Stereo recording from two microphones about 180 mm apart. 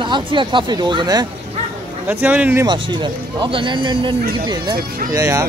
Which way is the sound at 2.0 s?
10° right (ahead or behind).